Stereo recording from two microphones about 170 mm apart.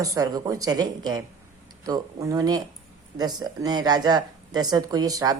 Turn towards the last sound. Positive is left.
turn(degrees=-20)  # may be behind; listen again after turning